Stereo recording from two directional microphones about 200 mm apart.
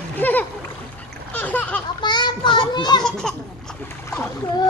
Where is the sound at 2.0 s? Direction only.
20° left (ahead or behind).